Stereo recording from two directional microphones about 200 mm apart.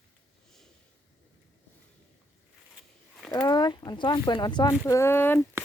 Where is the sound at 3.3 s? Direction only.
20° left (ahead or behind).